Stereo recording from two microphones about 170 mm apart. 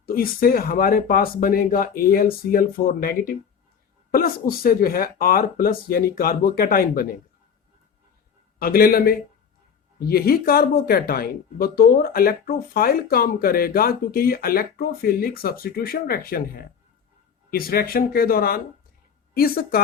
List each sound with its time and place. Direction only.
0.0 s speech: 60° left (ahead or behind)
8.5 s speech: 60° left (ahead or behind)